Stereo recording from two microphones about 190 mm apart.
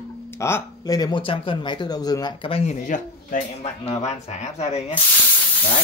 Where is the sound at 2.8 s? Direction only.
40° left (ahead or behind).